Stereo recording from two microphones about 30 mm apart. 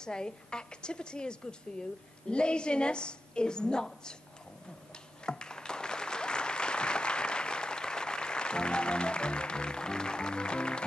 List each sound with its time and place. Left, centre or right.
0.0 s a woman's voice: left
5.2 s applause: left